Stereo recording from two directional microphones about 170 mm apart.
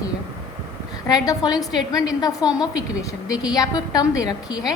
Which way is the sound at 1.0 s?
20° left (ahead or behind).